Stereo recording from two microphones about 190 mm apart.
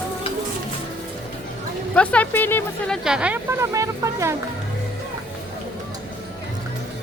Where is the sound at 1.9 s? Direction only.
5° left (ahead or behind).